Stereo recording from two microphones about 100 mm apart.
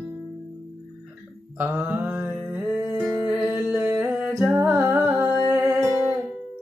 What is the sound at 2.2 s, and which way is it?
Music, 5° right (ahead or behind).